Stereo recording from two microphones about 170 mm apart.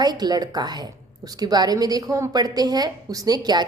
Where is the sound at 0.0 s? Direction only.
25° right (ahead or behind).